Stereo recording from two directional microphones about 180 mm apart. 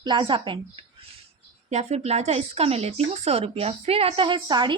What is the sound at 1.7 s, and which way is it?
Speech, 35° right (ahead or behind).